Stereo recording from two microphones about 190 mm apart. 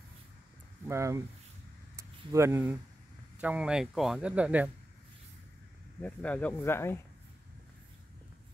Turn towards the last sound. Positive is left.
turn(degrees=10)  # may be behind; listen again after turning